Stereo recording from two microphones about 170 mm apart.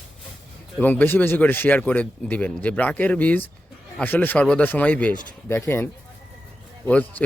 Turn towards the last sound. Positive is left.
turn(degrees=10)  # may be behind; listen again after turning